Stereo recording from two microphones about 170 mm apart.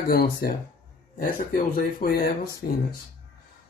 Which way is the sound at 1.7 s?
65° left (ahead or behind).